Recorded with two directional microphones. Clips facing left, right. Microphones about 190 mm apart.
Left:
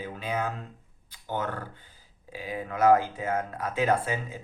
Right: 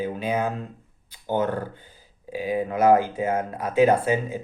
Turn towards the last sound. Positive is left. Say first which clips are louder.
# right 6 dB
turn(degrees=-15)  # may be behind; listen again after turning